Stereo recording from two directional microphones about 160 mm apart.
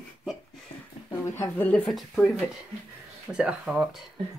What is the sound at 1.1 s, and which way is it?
Speech, 15° left (ahead or behind).